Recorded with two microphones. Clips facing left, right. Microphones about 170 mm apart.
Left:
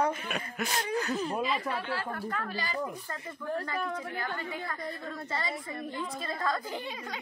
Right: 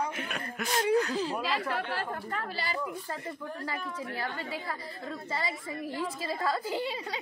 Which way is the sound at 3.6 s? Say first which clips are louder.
Left 3 dB; 55° left (ahead or behind).